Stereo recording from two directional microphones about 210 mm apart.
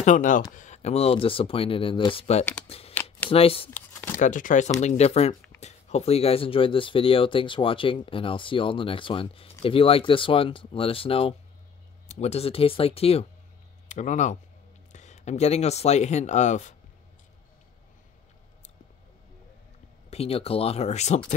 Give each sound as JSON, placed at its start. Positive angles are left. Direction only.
{"t": 0.0, "sound": "speech", "side_deg": 40}
{"t": 2.9, "sound": "shuffling cards", "side_deg": 10}
{"t": 3.3, "sound": "speech", "side_deg": 25}
{"t": 3.7, "sound": "a sound", "side_deg": 10}
{"t": 4.2, "sound": "speech", "side_deg": 40}
{"t": 20.1, "sound": "speech", "side_deg": 30}